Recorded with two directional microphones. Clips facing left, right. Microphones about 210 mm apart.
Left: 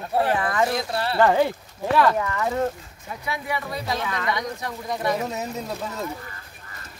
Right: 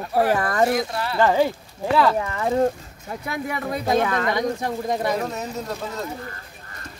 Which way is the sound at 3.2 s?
50° right (ahead or behind).